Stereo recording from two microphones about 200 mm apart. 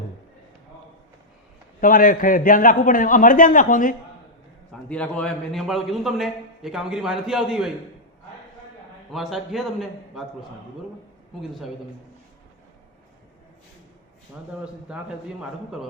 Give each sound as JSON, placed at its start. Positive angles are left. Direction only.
{"t": 1.8, "sound": "a man's voice", "side_deg": 45}
{"t": 4.7, "sound": "a man's voice", "side_deg": 5}
{"t": 9.1, "sound": "a man's voice", "side_deg": 0}
{"t": 14.6, "sound": "a man's voice", "side_deg": -5}